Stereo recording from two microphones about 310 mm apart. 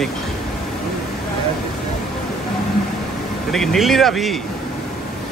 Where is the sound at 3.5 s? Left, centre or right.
Centre.